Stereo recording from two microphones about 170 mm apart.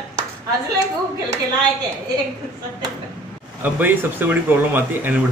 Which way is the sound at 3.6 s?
10° right (ahead or behind).